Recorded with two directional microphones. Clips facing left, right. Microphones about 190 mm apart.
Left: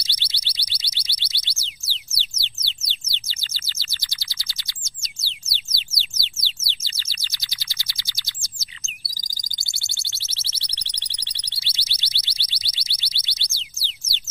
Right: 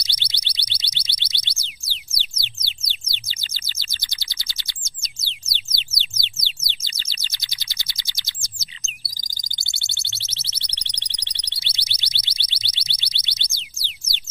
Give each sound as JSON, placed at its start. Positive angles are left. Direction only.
{"t": 0.0, "sound": "alarm", "side_deg": -20}
{"t": 5.2, "sound": "bird", "side_deg": -20}
{"t": 10.0, "sound": "alarm", "side_deg": -20}